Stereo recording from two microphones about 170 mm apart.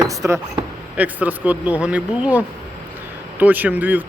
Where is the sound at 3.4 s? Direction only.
10° right (ahead or behind).